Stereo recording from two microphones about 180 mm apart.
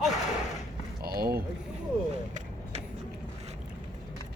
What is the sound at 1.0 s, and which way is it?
Speech, 55° right (ahead or behind).